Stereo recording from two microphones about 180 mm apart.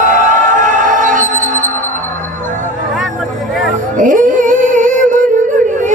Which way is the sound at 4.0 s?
45° right (ahead or behind).